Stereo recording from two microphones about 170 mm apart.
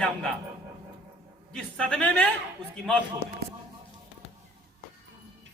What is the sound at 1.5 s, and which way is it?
Speech, 5° left (ahead or behind).